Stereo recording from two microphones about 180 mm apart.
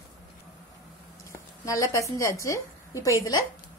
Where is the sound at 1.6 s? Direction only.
20° left (ahead or behind).